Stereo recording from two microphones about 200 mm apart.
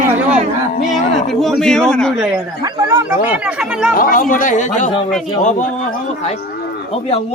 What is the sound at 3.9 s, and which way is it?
Speech, 45° left (ahead or behind).